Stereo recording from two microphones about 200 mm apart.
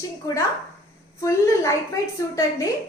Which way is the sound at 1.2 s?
15° left (ahead or behind).